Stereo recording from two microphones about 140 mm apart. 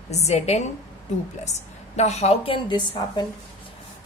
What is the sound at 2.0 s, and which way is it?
A woman's voice, 50° left (ahead or behind).